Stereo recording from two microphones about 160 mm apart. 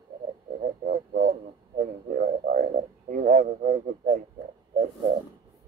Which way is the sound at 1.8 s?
55° right (ahead or behind).